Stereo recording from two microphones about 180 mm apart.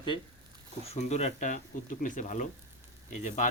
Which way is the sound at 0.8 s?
35° left (ahead or behind).